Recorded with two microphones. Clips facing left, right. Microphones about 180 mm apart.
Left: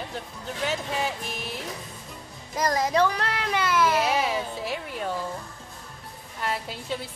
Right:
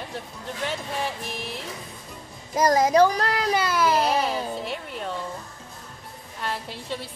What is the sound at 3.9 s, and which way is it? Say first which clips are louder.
Speech: right 1 dB; 5° left (ahead or behind).